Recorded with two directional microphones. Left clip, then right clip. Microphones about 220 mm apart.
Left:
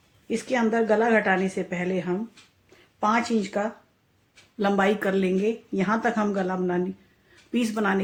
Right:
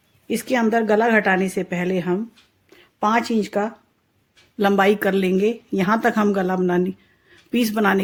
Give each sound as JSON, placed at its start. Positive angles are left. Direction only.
{"t": 0.3, "sound": "speech", "side_deg": -50}